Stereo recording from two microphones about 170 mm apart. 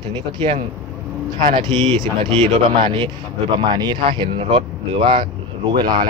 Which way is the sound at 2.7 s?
30° right (ahead or behind).